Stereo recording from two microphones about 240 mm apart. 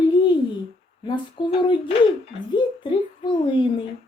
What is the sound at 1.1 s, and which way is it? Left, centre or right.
Speech, left.